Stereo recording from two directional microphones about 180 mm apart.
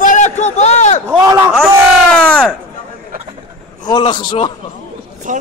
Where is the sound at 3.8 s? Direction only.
25° left (ahead or behind).